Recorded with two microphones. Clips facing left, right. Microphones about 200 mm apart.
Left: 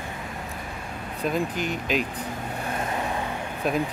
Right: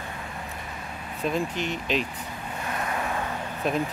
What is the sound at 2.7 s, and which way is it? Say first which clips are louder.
Vehicle: left 1 dB; 25° left (ahead or behind).